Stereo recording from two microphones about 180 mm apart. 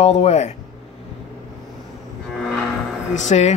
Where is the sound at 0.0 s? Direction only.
35° left (ahead or behind).